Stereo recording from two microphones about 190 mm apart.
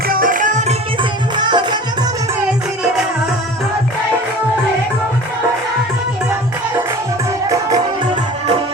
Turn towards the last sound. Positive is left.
turn(degrees=-20)  # may be behind; listen again after turning